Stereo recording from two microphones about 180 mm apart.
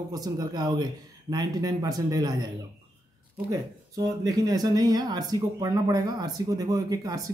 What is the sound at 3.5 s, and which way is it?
Speech, 20° right (ahead or behind).